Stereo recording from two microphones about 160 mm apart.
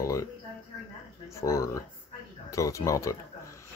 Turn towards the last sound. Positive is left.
turn(degrees=20)  # may be behind; listen again after turning